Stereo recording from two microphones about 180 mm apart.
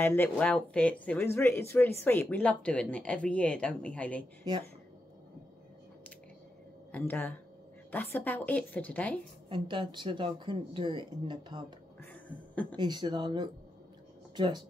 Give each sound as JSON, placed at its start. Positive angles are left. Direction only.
{"t": 0.0, "sound": "speech", "side_deg": 10}
{"t": 6.9, "sound": "speech", "side_deg": 10}
{"t": 9.5, "sound": "speech", "side_deg": -25}
{"t": 12.0, "sound": "a sound", "side_deg": 10}
{"t": 12.7, "sound": "speech", "side_deg": -25}